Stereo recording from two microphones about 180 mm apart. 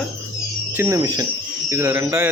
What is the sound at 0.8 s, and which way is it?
Speech, 15° right (ahead or behind).